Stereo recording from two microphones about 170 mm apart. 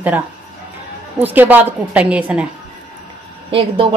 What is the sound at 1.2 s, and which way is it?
A woman's voice, 10° right (ahead or behind).